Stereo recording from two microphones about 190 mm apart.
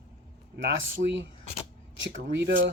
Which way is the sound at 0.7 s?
70° right (ahead or behind).